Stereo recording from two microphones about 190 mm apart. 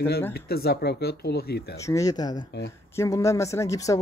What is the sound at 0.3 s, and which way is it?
Speech, 55° left (ahead or behind).